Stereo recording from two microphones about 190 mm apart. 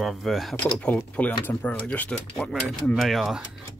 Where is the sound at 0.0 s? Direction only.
Centre (ahead or behind).